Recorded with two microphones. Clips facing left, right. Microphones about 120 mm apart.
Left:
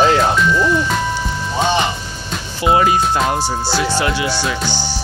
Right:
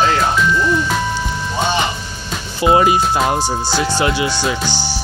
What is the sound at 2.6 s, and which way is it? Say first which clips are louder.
Music: right 1 dB; 20° right (ahead or behind).